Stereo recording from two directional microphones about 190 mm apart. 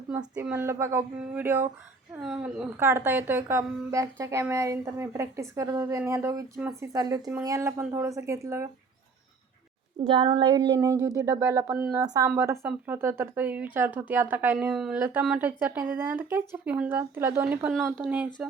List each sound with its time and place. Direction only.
0.3 s a woman's voice: 10° right (ahead or behind)
10.0 s a woman's voice: 30° right (ahead or behind); by 18.3 s 5° right (ahead or behind)